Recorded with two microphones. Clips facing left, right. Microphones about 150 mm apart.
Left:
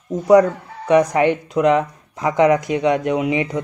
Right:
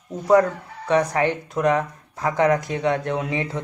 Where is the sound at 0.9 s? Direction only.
15° left (ahead or behind).